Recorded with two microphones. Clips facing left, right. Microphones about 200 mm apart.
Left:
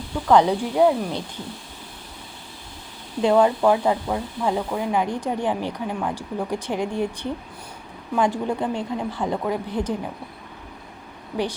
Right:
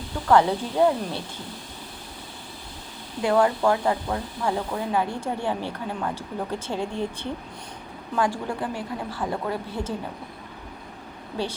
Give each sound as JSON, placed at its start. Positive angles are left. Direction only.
{"t": 0.3, "sound": "speech", "side_deg": 15}
{"t": 3.2, "sound": "speech", "side_deg": 20}